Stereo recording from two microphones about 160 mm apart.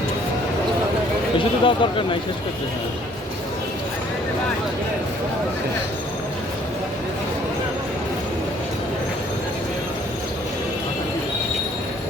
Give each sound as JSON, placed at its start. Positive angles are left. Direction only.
{"t": 1.6, "sound": "speech", "side_deg": 30}